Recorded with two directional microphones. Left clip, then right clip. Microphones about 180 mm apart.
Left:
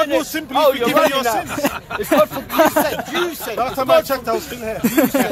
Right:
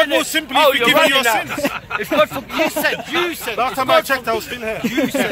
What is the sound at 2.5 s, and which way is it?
Speech, 25° left (ahead or behind).